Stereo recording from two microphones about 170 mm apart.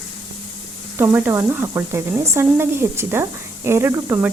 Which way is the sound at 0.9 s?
10° right (ahead or behind).